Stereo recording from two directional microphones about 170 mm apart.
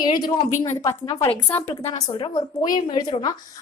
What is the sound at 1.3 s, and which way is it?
Speech, 10° left (ahead or behind).